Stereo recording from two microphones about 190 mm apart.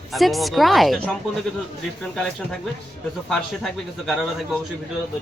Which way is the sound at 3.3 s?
Centre (ahead or behind).